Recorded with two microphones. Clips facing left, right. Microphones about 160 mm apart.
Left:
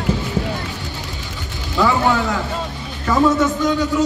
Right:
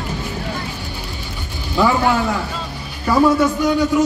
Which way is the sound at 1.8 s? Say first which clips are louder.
Right 1 dB; 15° right (ahead or behind).